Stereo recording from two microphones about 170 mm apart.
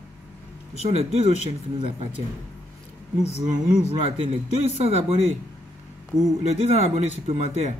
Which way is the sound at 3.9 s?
35° right (ahead or behind).